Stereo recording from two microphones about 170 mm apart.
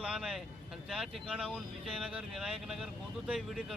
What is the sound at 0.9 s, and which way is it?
Speech, centre (ahead or behind).